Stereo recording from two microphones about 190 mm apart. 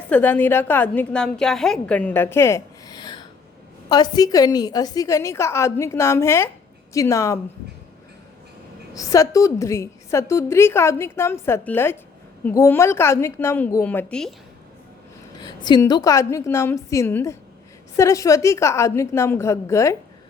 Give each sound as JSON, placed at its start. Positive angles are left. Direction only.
{"t": 0.1, "sound": "a woman's voice", "side_deg": 10}
{"t": 3.8, "sound": "a woman's voice", "side_deg": 20}
{"t": 9.0, "sound": "a woman's voice", "side_deg": 20}
{"t": 15.4, "sound": "a woman's voice", "side_deg": 20}